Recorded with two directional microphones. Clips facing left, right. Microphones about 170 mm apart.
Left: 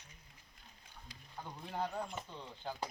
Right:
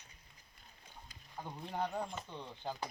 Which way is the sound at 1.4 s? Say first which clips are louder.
Right 1 dB; 15° right (ahead or behind).